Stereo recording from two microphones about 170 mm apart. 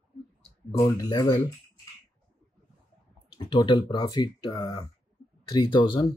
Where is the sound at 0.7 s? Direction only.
20° left (ahead or behind).